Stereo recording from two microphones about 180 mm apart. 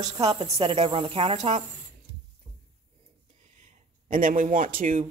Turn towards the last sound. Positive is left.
turn(degrees=-50)  # may be behind; listen again after turning